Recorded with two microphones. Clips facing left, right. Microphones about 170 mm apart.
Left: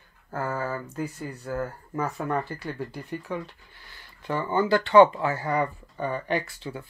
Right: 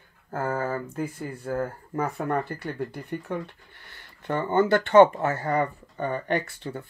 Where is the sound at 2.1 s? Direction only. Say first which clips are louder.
Right 1 dB; 55° right (ahead or behind).